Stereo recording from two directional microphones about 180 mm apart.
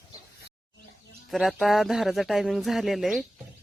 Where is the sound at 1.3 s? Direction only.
Centre (ahead or behind).